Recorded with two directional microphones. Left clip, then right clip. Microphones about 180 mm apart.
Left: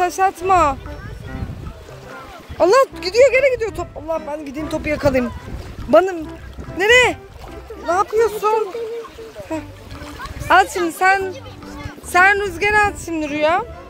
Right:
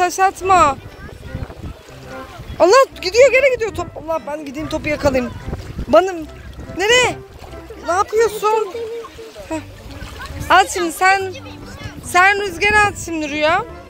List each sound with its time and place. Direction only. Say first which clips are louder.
0.0 s speech: right 2 dB; centre (ahead or behind)
2.6 s speech: right 2 dB; 5° right (ahead or behind)
4.6 s speech: right 1 dB; 10° left (ahead or behind)
6.8 s speech: left 1 dB; 20° left (ahead or behind)
7.8 s speech: right 1 dB; 5° left (ahead or behind)